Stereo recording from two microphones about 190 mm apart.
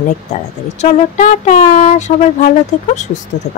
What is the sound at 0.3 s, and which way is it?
Speech, 40° left (ahead or behind).